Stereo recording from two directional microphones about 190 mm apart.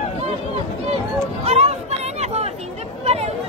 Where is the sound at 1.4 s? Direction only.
35° right (ahead or behind).